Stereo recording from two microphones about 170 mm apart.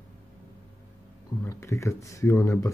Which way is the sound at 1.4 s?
15° left (ahead or behind).